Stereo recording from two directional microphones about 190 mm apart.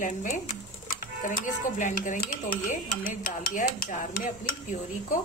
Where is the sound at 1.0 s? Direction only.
45° left (ahead or behind).